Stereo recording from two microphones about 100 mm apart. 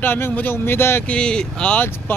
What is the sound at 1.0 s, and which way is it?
Speech, 10° left (ahead or behind).